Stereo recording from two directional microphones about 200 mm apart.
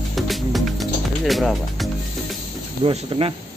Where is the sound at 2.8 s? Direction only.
30° right (ahead or behind).